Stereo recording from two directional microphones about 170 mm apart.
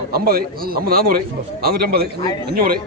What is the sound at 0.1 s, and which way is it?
A man's voice, 60° right (ahead or behind).